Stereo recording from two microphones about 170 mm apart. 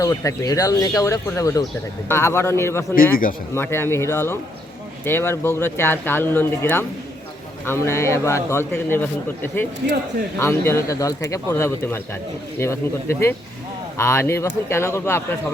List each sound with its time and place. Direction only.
0.0 s a man's voice: 20° left (ahead or behind)
2.9 s a man's voice: 55° left (ahead or behind)
3.5 s a man's voice: 15° left (ahead or behind)